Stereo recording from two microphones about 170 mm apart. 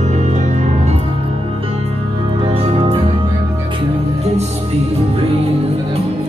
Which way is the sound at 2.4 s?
35° right (ahead or behind).